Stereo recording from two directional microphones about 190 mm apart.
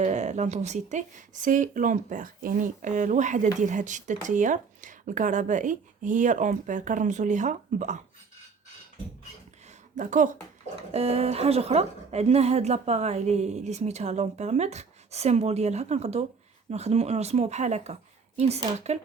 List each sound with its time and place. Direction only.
0.0 s a woman's voice: 35° right (ahead or behind)
9.9 s a woman's voice: 40° right (ahead or behind)